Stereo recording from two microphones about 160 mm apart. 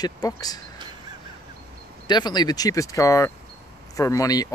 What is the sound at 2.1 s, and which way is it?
Speech, 25° left (ahead or behind).